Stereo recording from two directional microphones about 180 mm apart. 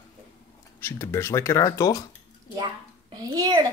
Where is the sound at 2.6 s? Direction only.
20° right (ahead or behind).